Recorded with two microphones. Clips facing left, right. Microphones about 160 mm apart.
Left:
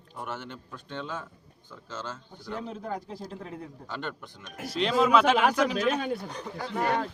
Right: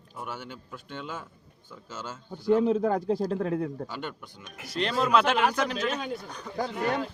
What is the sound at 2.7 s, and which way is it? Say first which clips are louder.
Speech: right 11 dB; 90° right.